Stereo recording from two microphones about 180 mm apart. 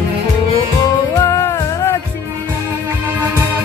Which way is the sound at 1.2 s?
15° left (ahead or behind).